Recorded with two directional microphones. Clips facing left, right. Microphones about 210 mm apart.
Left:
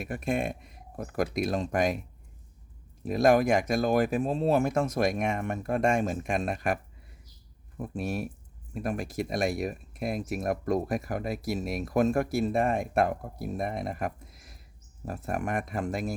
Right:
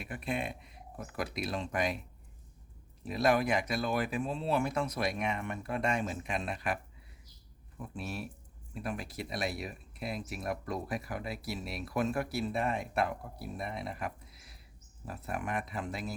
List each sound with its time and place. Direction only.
0.0 s speech: 45° left (ahead or behind)
3.0 s speech: 45° left (ahead or behind)
7.8 s speech: 45° left (ahead or behind)